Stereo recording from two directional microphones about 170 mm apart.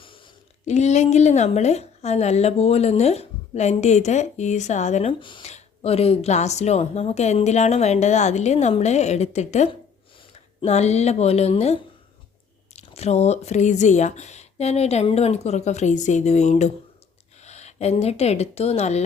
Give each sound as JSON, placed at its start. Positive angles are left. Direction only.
{"t": 0.6, "sound": "a woman's voice", "side_deg": 40}
{"t": 5.2, "sound": "a woman's voice", "side_deg": 30}